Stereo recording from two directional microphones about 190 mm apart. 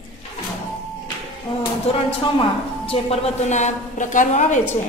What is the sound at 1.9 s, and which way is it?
A woman's voice, 30° left (ahead or behind).